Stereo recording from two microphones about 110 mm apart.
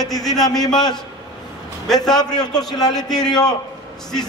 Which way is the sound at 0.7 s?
40° left (ahead or behind).